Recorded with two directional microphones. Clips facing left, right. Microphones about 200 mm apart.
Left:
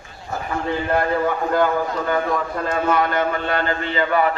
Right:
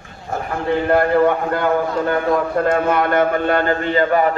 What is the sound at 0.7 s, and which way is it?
A man's voice, 60° right (ahead or behind).